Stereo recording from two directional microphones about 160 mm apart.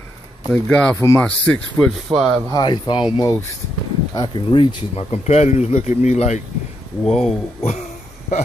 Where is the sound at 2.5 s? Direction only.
30° left (ahead or behind); by 6.4 s 45° left (ahead or behind).